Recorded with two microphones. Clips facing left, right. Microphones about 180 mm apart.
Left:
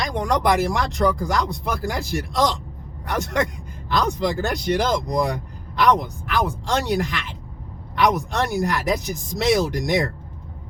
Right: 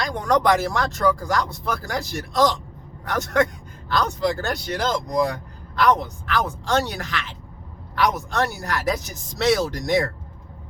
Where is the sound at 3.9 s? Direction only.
15° left (ahead or behind).